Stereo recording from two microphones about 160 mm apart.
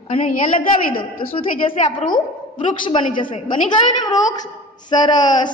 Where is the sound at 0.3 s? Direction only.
55° left (ahead or behind).